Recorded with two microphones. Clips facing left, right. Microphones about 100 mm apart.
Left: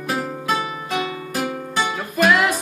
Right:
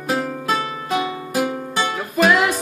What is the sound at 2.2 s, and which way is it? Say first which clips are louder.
Music: right 1 dB; centre (ahead or behind).